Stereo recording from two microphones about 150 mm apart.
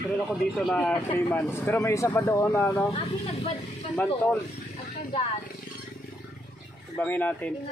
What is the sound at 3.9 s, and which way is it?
Speech, 10° left (ahead or behind).